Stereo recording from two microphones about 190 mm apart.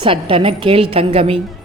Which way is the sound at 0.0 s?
30° right (ahead or behind).